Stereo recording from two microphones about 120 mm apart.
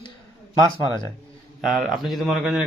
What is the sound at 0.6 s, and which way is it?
Speech, 30° right (ahead or behind).